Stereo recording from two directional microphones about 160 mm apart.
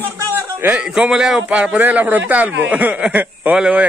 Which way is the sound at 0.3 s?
15° right (ahead or behind).